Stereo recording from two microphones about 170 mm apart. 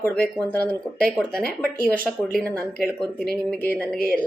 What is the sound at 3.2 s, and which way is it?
Speech, 65° left (ahead or behind).